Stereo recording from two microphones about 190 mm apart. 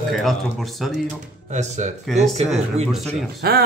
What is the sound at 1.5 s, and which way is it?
Speech, 40° right (ahead or behind).